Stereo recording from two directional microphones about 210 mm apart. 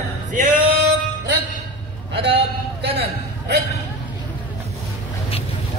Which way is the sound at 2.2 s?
25° right (ahead or behind).